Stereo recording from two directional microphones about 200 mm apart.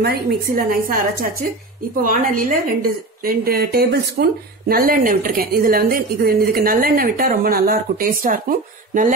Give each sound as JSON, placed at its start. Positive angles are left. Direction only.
{"t": 0.0, "sound": "a woman's voice", "side_deg": -50}